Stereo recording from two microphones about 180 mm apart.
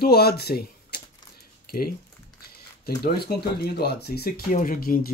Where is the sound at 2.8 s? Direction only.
60° left (ahead or behind).